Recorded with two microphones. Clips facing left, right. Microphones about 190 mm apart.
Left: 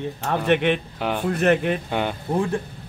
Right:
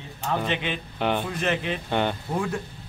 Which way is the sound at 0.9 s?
5° left (ahead or behind).